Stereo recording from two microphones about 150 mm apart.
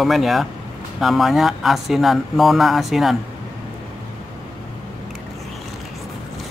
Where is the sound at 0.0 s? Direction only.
Centre (ahead or behind).